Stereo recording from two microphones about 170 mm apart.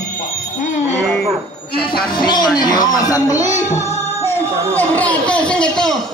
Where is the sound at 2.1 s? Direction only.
25° left (ahead or behind).